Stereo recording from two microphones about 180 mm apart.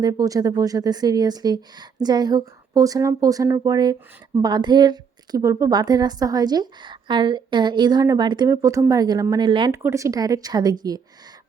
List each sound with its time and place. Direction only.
0.0 s a woman's voice: 20° right (ahead or behind)
9.7 s a woman's voice: 15° right (ahead or behind)